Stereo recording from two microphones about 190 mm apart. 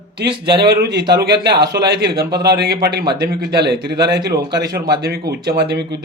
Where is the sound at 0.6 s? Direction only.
60° right (ahead or behind).